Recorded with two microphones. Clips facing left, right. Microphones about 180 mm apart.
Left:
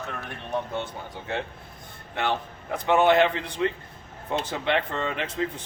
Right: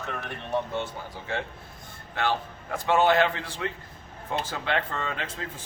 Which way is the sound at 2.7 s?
20° left (ahead or behind).